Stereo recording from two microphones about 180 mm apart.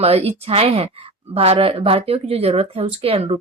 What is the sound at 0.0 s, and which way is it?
A woman's voice, 35° right (ahead or behind).